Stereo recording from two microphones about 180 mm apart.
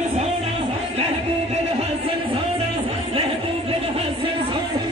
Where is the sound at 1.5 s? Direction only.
35° right (ahead or behind).